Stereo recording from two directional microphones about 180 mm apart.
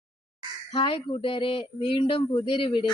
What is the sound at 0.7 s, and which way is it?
Speech, 30° left (ahead or behind).